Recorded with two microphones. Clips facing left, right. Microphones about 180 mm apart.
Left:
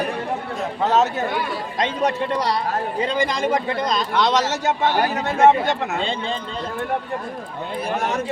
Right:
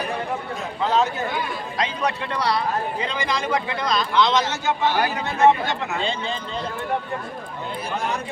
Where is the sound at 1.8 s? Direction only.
45° left (ahead or behind).